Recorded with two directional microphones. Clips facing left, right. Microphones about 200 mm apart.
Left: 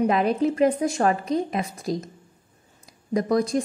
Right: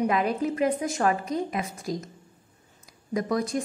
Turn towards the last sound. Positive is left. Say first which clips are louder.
# left 5 dB
turn(degrees=35)  # may be behind; listen again after turning